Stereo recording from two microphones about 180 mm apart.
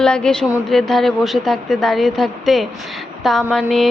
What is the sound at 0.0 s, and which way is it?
A woman's voice, 5° left (ahead or behind).